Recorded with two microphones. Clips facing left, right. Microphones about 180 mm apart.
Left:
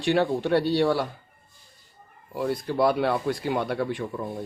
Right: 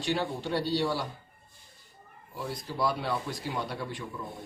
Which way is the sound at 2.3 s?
60° left (ahead or behind).